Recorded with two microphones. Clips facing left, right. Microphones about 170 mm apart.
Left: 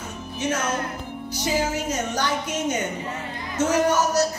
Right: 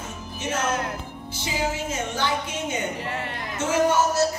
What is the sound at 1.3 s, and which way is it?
A woman's voice, 40° left (ahead or behind).